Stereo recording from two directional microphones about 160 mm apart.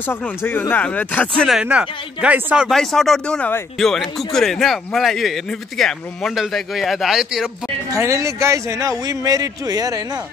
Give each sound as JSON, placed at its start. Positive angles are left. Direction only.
{"t": 0.0, "sound": "speech", "side_deg": 15}
{"t": 1.6, "sound": "speech", "side_deg": -5}
{"t": 7.9, "sound": "a man's voice", "side_deg": -20}